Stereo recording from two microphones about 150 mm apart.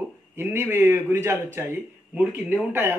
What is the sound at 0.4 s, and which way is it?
A man's voice, 15° right (ahead or behind).